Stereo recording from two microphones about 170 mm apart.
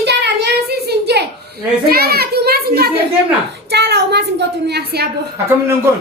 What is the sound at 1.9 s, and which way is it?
A child's voice, 65° right (ahead or behind).